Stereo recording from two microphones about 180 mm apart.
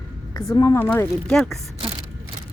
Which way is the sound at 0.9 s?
5° left (ahead or behind).